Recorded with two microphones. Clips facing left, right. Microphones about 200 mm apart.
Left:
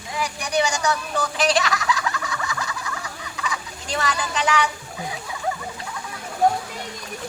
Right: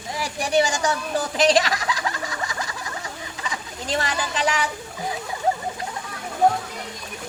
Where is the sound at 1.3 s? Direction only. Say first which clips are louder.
Right 3 dB; 35° right (ahead or behind).